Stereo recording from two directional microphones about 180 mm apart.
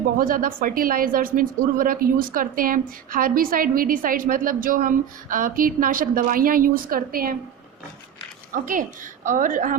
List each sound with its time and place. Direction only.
0.2 s a woman's voice: 50° right (ahead or behind)
8.6 s a woman's voice: 45° right (ahead or behind)